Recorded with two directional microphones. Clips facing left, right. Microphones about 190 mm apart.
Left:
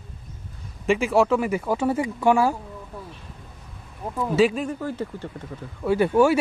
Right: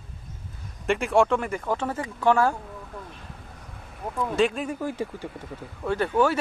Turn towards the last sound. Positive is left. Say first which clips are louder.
# left 5 dB
turn(degrees=10)  # may be behind; listen again after turning